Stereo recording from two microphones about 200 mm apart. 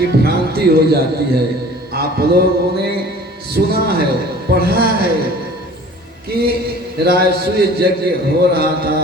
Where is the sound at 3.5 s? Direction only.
50° right (ahead or behind).